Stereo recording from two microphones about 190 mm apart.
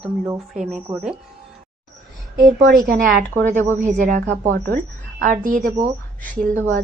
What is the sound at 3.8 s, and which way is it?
A woman's voice, 40° right (ahead or behind).